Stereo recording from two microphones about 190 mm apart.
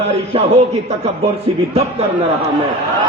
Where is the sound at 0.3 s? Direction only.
30° right (ahead or behind).